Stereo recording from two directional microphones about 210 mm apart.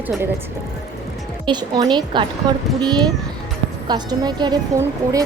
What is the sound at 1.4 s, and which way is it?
A woman's voice, 20° right (ahead or behind).